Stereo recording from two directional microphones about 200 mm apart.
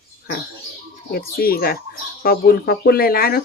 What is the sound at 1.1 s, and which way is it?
Speech, 50° left (ahead or behind).